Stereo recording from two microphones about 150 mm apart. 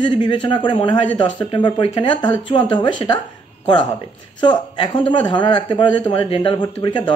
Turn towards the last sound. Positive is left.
turn(degrees=30)  # may be behind; listen again after turning